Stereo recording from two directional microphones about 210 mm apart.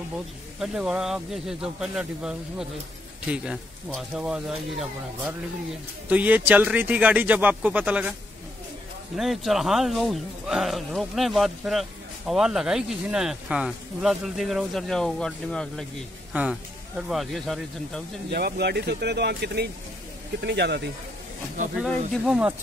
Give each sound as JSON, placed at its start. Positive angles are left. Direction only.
{"t": 0.6, "sound": "speech", "side_deg": -5}
{"t": 9.1, "sound": "speech", "side_deg": 0}
{"t": 17.1, "sound": "speech", "side_deg": 0}
{"t": 18.3, "sound": "speech", "side_deg": -50}
{"t": 21.7, "sound": "speech", "side_deg": 0}